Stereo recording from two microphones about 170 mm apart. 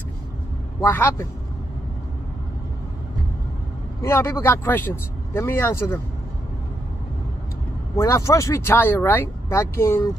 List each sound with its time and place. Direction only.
0.7 s speech: 15° left (ahead or behind)
4.0 s speech: 15° left (ahead or behind)
7.9 s speech: 15° left (ahead or behind)